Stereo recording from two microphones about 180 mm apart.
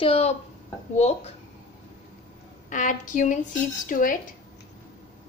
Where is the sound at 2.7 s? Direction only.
45° left (ahead or behind).